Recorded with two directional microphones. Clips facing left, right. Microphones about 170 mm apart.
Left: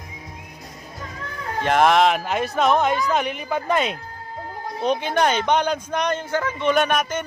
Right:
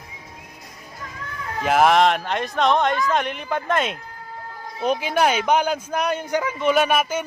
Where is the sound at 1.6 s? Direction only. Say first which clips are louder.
Even; 5° right (ahead or behind).